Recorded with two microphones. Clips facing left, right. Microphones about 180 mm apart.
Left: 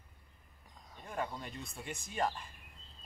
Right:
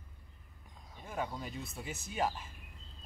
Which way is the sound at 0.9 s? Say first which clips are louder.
Right 1 dB; centre (ahead or behind).